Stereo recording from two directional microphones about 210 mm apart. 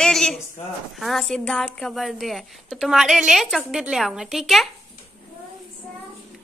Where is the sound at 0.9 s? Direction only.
Centre (ahead or behind).